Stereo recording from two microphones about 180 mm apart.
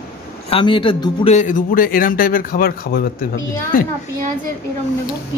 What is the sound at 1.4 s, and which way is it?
A woman's voice, 45° left (ahead or behind).